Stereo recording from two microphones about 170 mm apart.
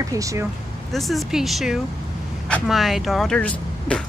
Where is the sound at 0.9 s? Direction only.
Centre (ahead or behind).